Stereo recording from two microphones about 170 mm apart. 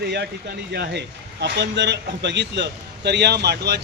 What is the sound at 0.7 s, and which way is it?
Speech, 85° right.